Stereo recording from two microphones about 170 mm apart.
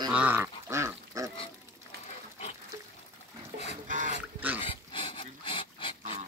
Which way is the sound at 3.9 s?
50° right (ahead or behind).